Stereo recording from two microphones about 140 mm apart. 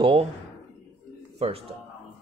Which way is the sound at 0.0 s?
40° right (ahead or behind).